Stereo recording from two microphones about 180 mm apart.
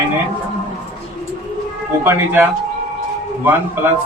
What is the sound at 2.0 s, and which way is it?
Speech, 10° right (ahead or behind).